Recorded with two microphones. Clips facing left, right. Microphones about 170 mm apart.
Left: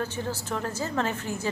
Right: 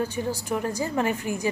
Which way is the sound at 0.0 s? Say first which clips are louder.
Right 3 dB; 15° right (ahead or behind).